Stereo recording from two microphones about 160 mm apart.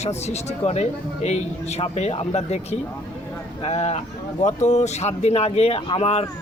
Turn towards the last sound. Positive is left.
turn(degrees=40)  # may be behind; listen again after turning